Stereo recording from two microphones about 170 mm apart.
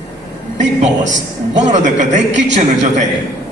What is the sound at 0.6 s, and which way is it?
A man's voice, 45° right (ahead or behind).